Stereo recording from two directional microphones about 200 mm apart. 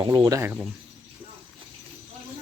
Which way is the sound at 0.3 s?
15° right (ahead or behind).